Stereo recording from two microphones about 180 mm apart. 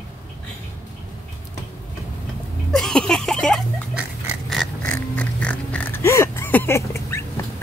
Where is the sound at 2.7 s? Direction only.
5° left (ahead or behind).